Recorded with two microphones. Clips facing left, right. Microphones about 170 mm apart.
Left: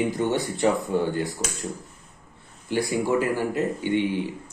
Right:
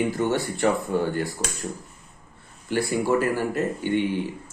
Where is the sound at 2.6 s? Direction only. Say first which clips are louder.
Right 1 dB; 15° left (ahead or behind).